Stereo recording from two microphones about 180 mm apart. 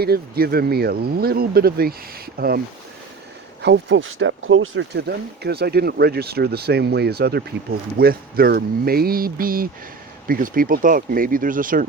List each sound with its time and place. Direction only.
0.0 s speech: 60° right (ahead or behind)
3.6 s speech: 85° right; by 11.9 s 50° right (ahead or behind)